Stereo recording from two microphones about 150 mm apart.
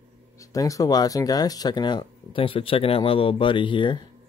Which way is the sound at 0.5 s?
20° left (ahead or behind).